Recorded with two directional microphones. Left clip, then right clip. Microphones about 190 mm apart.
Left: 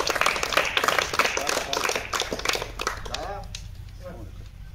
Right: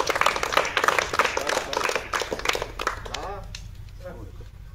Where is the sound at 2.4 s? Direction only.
20° left (ahead or behind).